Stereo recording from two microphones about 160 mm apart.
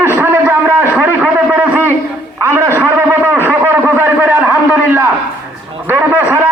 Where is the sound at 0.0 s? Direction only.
15° right (ahead or behind).